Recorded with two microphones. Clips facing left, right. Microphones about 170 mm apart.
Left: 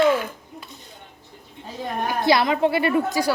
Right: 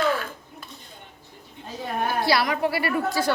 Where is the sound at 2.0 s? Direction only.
20° left (ahead or behind).